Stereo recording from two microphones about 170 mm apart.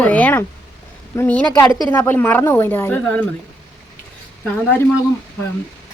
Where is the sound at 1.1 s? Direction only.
15° left (ahead or behind).